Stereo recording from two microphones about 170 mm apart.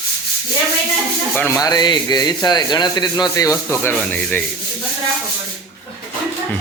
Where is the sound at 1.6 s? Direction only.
25° left (ahead or behind).